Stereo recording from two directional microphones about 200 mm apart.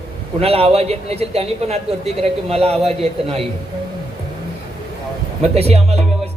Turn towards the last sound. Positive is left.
turn(degrees=-30)  # may be behind; listen again after turning